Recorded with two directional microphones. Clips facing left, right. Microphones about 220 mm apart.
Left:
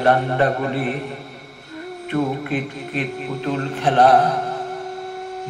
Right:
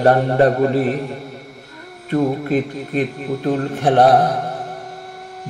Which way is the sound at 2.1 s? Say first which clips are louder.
Right 4 dB; 40° right (ahead or behind).